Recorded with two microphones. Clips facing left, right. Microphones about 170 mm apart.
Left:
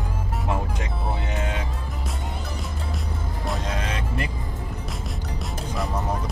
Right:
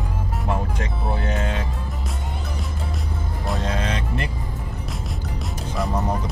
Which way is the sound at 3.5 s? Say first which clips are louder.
Right 4 dB; 5° left (ahead or behind).